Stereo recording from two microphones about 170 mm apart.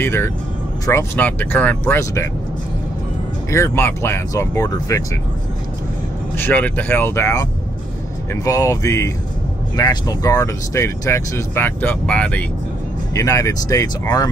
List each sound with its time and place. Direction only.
0.0 s speech: 15° left (ahead or behind)
3.4 s speech: 15° left (ahead or behind)
6.3 s speech: 10° left (ahead or behind)
8.5 s speech: 20° left (ahead or behind)
13.1 s speech: 20° left (ahead or behind)